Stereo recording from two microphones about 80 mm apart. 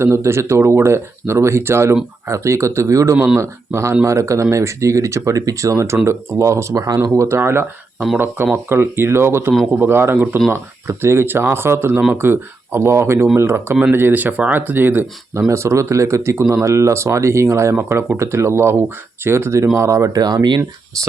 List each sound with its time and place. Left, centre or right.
0.0 s speech: right
15.4 s speech: right
20.2 s speech: right